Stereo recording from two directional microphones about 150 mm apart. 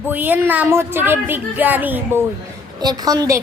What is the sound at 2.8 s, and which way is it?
Speech, 25° right (ahead or behind).